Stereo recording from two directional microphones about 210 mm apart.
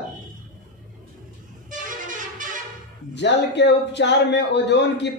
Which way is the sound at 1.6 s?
40° right (ahead or behind).